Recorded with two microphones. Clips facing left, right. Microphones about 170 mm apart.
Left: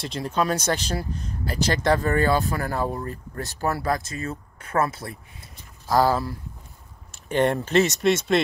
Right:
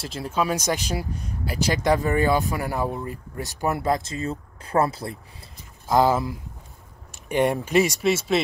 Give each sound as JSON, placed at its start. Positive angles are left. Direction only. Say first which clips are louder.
{"t": 0.0, "sound": "speech", "louder": "left 1 dB", "side_deg": -5}